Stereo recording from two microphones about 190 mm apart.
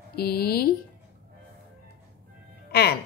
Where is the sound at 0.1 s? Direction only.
55° left (ahead or behind).